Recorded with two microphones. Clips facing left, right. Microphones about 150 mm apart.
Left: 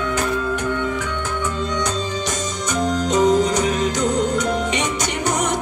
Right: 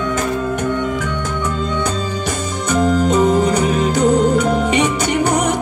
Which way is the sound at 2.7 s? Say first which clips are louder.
Right 6 dB; 55° right (ahead or behind).